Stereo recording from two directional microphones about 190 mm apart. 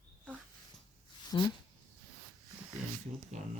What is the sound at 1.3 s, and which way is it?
Speech, 25° left (ahead or behind).